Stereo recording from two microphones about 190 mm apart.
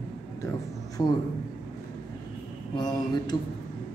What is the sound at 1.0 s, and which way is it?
Speech, 20° left (ahead or behind).